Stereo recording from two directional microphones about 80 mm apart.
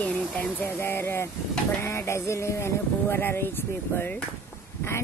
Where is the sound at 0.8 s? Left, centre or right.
Left.